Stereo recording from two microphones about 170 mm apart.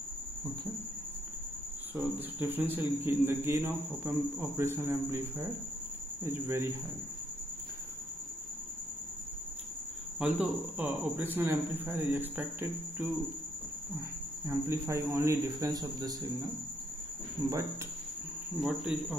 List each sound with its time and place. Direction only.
2.0 s speech: 10° right (ahead or behind)
10.1 s speech: 10° right (ahead or behind)
14.4 s a man's voice: 15° right (ahead or behind)
18.6 s speech: 5° right (ahead or behind)